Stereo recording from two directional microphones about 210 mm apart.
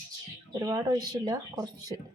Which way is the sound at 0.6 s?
15° right (ahead or behind).